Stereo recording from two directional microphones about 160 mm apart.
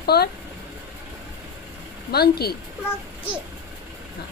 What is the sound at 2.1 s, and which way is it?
Speech, 80° left.